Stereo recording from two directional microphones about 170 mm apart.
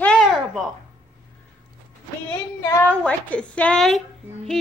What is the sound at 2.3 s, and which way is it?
A woman's voice, 15° left (ahead or behind).